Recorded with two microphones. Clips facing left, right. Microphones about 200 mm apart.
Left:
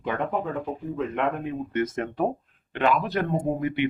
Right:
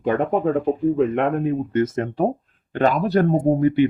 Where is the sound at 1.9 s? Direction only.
30° right (ahead or behind).